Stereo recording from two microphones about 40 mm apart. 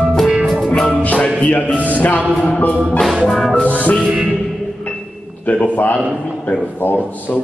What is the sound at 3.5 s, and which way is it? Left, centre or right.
Music, left.